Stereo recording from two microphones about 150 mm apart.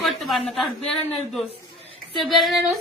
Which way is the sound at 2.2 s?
Centre (ahead or behind).